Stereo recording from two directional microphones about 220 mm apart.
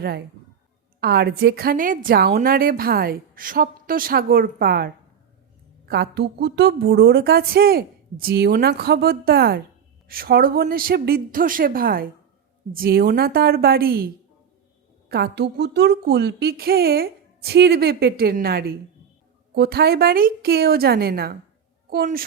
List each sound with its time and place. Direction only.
0.0 s a woman's voice: 45° right (ahead or behind)
15.1 s a woman's voice: 50° right (ahead or behind)